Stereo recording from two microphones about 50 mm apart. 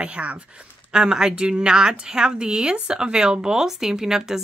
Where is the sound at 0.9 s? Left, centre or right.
Centre.